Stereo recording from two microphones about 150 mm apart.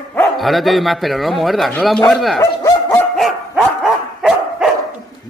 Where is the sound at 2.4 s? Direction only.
20° left (ahead or behind).